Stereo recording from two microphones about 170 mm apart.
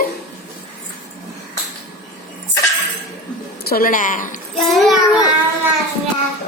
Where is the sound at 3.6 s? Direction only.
55° left (ahead or behind).